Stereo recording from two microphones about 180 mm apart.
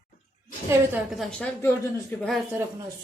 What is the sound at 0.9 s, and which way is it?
Speech, centre (ahead or behind).